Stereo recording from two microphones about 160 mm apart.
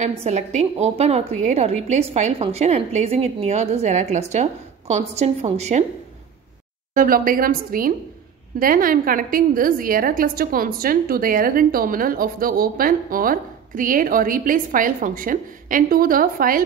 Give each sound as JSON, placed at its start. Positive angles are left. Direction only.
{"t": 0.2, "sound": "a woman's voice", "side_deg": -45}
{"t": 6.9, "sound": "a woman's voice", "side_deg": -60}